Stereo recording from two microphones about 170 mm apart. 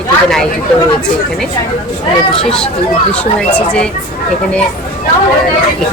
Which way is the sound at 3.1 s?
10° left (ahead or behind).